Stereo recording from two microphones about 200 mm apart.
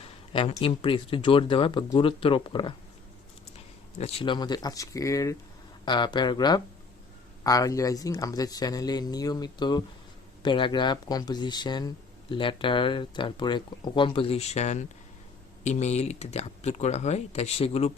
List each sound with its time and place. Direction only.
0.0 s speech: 25° left (ahead or behind)
3.9 s speech: 30° left (ahead or behind)